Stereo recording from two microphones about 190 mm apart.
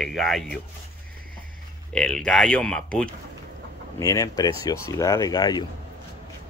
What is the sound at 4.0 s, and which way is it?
Speech, 20° left (ahead or behind).